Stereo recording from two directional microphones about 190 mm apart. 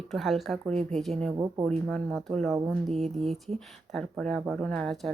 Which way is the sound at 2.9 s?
35° right (ahead or behind).